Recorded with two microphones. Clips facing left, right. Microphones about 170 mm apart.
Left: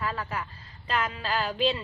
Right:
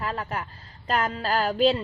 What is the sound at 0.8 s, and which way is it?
Speech, 45° right (ahead or behind).